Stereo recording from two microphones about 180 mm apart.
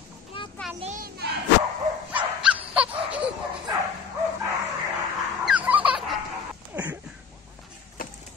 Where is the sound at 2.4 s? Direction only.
5° right (ahead or behind).